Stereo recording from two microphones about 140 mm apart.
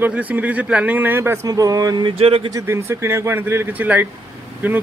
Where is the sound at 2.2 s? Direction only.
45° right (ahead or behind).